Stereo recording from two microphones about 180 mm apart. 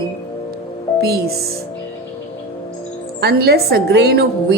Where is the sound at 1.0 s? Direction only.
60° right (ahead or behind).